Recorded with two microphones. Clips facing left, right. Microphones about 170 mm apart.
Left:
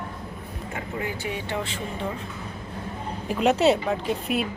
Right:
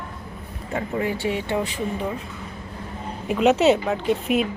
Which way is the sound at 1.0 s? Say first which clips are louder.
Right 5 dB; 25° right (ahead or behind).